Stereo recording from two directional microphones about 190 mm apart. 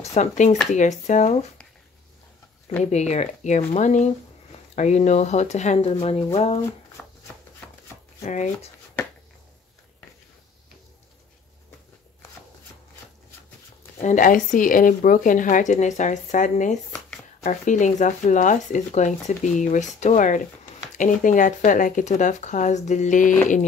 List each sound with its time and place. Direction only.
0.0 s speech: 35° left (ahead or behind)
2.8 s speech: 35° left (ahead or behind)
8.2 s speech: 40° left (ahead or behind)
14.0 s speech: 45° left (ahead or behind)